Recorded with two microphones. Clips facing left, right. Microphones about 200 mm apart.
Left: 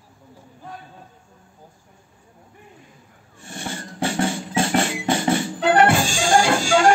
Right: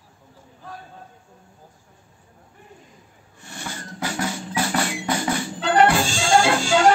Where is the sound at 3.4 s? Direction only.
30° left (ahead or behind).